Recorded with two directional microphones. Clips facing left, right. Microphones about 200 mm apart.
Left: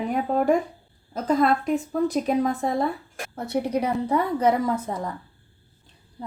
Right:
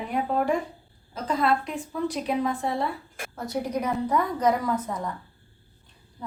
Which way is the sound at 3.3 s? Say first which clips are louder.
Left 4 dB; 30° left (ahead or behind).